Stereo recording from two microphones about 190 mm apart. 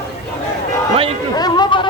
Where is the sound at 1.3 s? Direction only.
20° left (ahead or behind).